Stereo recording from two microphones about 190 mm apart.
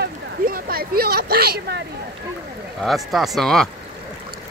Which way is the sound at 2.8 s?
Centre (ahead or behind).